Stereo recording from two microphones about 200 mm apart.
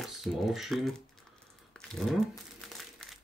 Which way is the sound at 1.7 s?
Centre (ahead or behind).